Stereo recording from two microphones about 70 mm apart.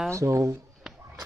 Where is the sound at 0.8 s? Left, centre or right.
Centre.